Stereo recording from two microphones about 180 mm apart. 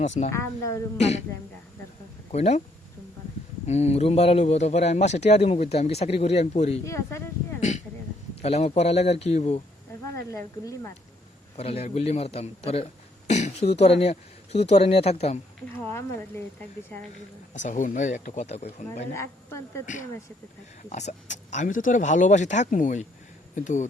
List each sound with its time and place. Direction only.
0.3 s a woman's voice: 15° left (ahead or behind)
0.9 s a man's voice: 40° left (ahead or behind)
2.3 s a man's voice: 35° left (ahead or behind)
3.7 s a man's voice: 35° left (ahead or behind)
6.8 s a woman's voice: 15° left (ahead or behind)
8.4 s a man's voice: 35° left (ahead or behind)
10.3 s a woman's voice: 15° left (ahead or behind)
11.5 s a man's voice: 35° left (ahead or behind)
15.9 s a woman's voice: 15° left (ahead or behind)
17.5 s speech: 45° left (ahead or behind)
19.1 s a woman's voice: 15° left (ahead or behind)
19.8 s speech: 45° left (ahead or behind)